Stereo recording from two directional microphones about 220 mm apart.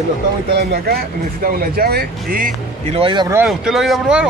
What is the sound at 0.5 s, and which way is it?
Speech, 45° right (ahead or behind).